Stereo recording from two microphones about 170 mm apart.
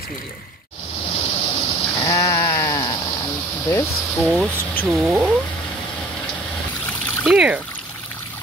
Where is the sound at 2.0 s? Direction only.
20° left (ahead or behind).